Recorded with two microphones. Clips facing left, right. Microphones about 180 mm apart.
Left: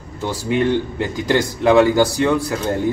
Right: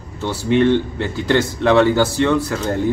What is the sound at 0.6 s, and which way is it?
Speech, 10° left (ahead or behind).